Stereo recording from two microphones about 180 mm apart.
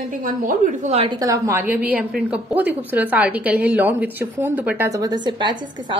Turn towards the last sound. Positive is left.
turn(degrees=-25)  # may be behind; listen again after turning